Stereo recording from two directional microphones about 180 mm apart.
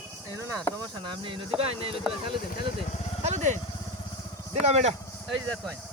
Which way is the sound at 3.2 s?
40° right (ahead or behind).